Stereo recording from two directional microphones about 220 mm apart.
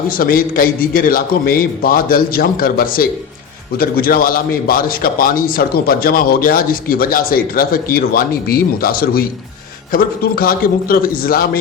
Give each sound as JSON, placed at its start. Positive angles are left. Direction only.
{"t": 0.1, "sound": "a man's voice", "side_deg": 40}